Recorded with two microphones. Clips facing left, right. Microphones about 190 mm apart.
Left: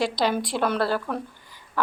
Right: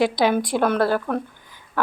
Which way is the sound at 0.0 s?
55° right (ahead or behind).